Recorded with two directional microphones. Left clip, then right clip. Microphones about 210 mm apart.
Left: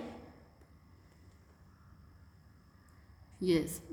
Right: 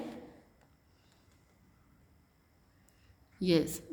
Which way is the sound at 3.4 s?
40° right (ahead or behind).